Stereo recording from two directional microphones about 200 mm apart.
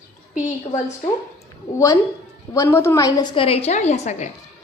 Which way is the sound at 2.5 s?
15° left (ahead or behind).